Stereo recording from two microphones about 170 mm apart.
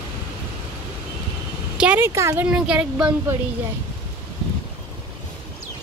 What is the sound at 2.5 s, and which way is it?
Speech, 5° right (ahead or behind).